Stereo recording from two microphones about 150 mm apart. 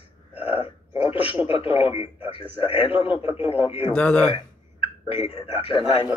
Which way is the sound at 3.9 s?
10° left (ahead or behind).